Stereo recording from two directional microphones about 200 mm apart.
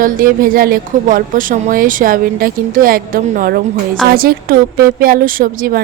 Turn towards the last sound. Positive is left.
turn(degrees=-45)  # may be behind; listen again after turning